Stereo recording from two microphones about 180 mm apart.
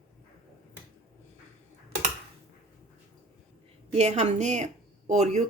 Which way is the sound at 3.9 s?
40° right (ahead or behind).